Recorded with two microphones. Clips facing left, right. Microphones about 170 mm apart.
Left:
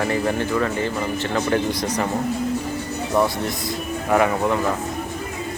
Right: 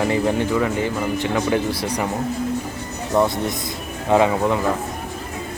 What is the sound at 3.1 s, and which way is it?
A man's voice, 20° right (ahead or behind).